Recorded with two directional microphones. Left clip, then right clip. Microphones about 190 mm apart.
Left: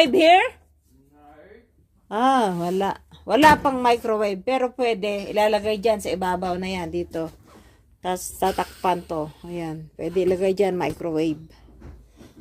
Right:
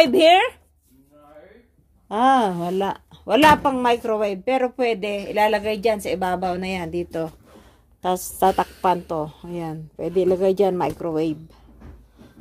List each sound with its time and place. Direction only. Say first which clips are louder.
0.0 s a woman's voice: right 1 dB; 10° right (ahead or behind)
2.0 s a woman's voice: right 2 dB; 5° right (ahead or behind)